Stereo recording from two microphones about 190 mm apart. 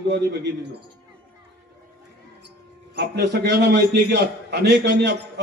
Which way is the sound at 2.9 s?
60° right (ahead or behind).